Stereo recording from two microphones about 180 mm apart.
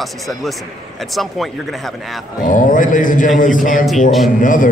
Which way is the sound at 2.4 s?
45° left (ahead or behind).